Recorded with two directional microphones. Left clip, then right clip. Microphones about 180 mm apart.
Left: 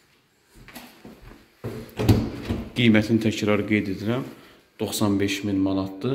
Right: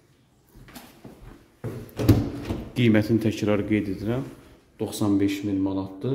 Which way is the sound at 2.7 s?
30° right (ahead or behind).